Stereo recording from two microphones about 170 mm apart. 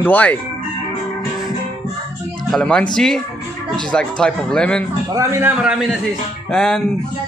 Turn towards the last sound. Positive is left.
turn(degrees=5)  # may be behind; listen again after turning